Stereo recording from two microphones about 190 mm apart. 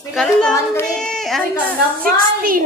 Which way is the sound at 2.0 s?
50° right (ahead or behind).